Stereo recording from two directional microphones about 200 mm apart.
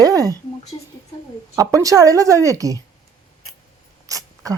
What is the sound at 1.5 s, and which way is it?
Speech, 15° right (ahead or behind).